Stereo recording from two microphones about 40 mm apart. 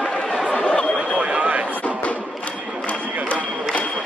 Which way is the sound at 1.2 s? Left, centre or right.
Right.